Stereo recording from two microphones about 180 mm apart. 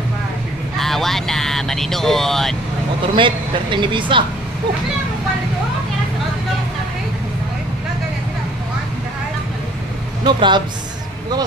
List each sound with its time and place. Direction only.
0.7 s speech: centre (ahead or behind)
3.2 s speech: 25° right (ahead or behind)
10.2 s speech: 25° right (ahead or behind)